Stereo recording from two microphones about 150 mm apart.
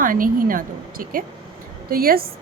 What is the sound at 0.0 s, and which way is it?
A woman's voice, 65° right (ahead or behind).